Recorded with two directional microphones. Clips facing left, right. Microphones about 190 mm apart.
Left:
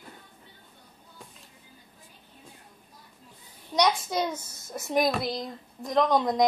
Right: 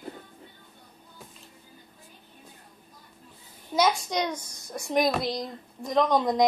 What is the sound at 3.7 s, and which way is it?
A child's voice, centre (ahead or behind).